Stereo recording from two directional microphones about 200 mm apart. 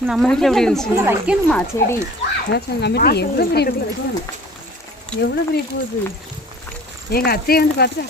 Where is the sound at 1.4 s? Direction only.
5° left (ahead or behind).